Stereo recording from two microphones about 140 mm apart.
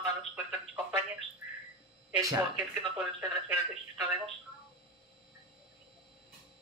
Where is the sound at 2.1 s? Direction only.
25° right (ahead or behind).